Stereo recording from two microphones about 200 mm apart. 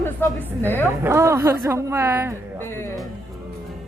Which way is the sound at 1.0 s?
15° right (ahead or behind).